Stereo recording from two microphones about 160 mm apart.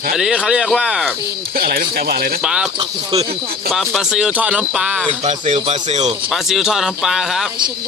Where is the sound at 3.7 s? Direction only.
Centre (ahead or behind).